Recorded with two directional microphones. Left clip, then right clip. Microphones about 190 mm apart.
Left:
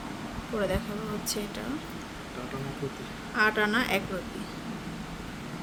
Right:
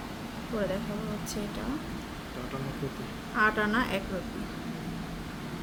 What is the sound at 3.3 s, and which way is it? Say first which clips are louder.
Speech: left 1 dB; 30° left (ahead or behind).